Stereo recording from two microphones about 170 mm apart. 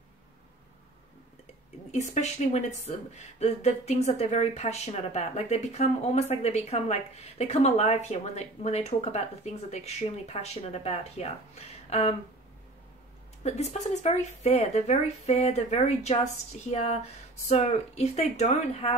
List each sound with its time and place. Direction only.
1.9 s a woman's voice: 40° left (ahead or behind)
13.4 s a woman's voice: 40° left (ahead or behind)